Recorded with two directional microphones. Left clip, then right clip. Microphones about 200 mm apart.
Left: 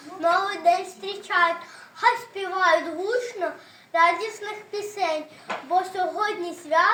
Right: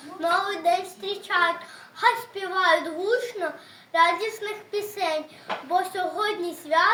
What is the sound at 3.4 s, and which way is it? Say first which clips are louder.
A woman's voice: left 1 dB; 15° right (ahead or behind).